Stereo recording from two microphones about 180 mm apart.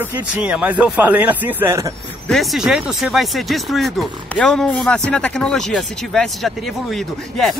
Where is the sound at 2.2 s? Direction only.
Centre (ahead or behind).